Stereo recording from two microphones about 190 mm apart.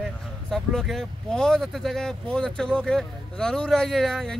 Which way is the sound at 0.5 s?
Centre (ahead or behind).